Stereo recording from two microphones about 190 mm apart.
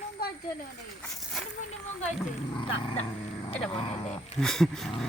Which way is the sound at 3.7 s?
30° left (ahead or behind).